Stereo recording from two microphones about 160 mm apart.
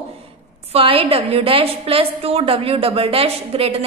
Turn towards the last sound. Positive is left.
turn(degrees=-35)  # may be behind; listen again after turning